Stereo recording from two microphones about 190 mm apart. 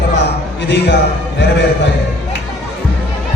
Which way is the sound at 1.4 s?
70° left (ahead or behind).